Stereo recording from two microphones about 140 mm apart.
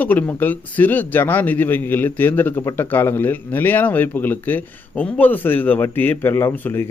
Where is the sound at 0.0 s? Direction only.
10° left (ahead or behind).